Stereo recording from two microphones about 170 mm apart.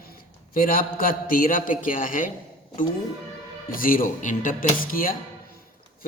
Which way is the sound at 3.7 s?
55° left (ahead or behind).